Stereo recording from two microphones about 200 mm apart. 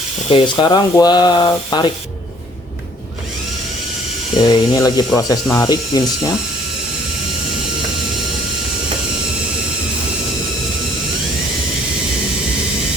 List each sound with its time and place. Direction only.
0.3 s speech: 25° left (ahead or behind)
4.4 s speech: 20° left (ahead or behind)